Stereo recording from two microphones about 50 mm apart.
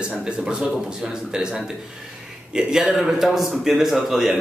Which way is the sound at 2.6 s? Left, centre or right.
Centre.